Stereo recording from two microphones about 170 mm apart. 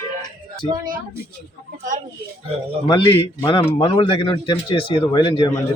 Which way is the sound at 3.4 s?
30° left (ahead or behind).